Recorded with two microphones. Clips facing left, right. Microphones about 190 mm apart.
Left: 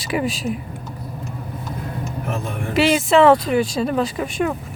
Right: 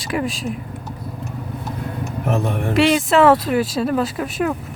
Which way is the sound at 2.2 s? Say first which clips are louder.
Right 8 dB; 65° right (ahead or behind).